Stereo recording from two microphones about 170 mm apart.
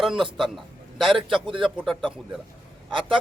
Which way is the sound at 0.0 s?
Centre (ahead or behind).